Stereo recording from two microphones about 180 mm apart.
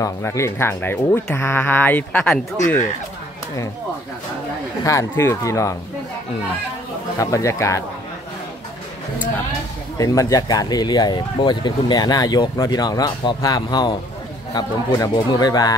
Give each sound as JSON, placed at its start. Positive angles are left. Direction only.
{"t": 0.0, "sound": "speech", "side_deg": 15}
{"t": 2.5, "sound": "speech", "side_deg": 20}
{"t": 4.8, "sound": "speech", "side_deg": 15}
{"t": 7.2, "sound": "speech", "side_deg": 15}
{"t": 9.9, "sound": "speech", "side_deg": 20}